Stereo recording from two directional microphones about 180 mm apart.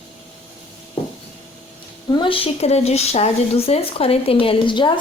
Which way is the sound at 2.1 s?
30° left (ahead or behind).